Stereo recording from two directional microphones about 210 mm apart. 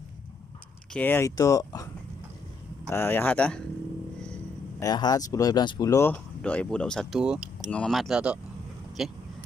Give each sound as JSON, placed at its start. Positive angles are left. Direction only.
{"t": 0.9, "sound": "speech", "side_deg": 10}
{"t": 2.9, "sound": "speech", "side_deg": 10}
{"t": 4.2, "sound": "a sound", "side_deg": 5}
{"t": 4.8, "sound": "speech", "side_deg": 20}